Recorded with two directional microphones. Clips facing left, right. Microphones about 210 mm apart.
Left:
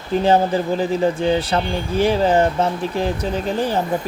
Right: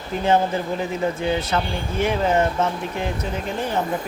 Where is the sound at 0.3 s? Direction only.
30° left (ahead or behind).